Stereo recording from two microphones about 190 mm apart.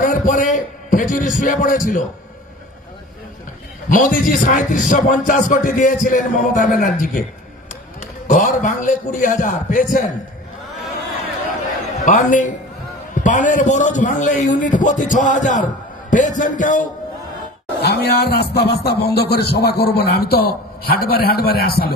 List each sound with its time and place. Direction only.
0.0 s music: 45° left (ahead or behind)
3.9 s music: 45° left (ahead or behind)
8.3 s music: 40° left (ahead or behind)
12.0 s a man's voice: 40° left (ahead or behind)
16.1 s music: 40° left (ahead or behind)
17.8 s a man's voice: 60° left (ahead or behind)